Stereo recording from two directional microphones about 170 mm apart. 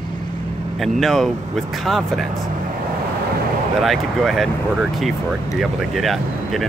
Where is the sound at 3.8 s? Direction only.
Centre (ahead or behind).